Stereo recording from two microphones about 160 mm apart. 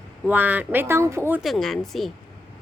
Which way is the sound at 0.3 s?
10° right (ahead or behind).